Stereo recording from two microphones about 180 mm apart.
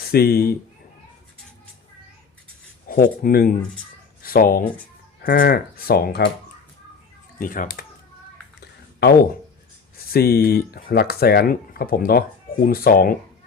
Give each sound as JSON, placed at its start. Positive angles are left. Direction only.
{"t": 0.1, "sound": "speech", "side_deg": 60}
{"t": 2.8, "sound": "speech", "side_deg": 50}
{"t": 7.3, "sound": "speech", "side_deg": 50}
{"t": 8.6, "sound": "a sound", "side_deg": 65}
{"t": 10.1, "sound": "speech", "side_deg": 60}